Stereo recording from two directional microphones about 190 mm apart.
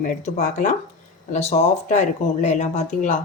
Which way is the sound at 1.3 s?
35° left (ahead or behind).